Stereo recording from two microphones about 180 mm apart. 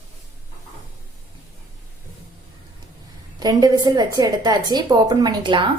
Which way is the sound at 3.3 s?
20° right (ahead or behind).